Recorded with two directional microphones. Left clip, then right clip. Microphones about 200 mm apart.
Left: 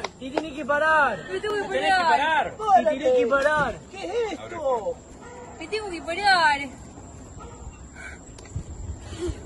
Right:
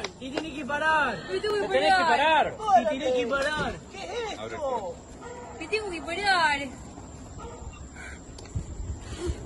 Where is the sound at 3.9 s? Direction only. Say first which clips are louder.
Left 6 dB; 35° left (ahead or behind).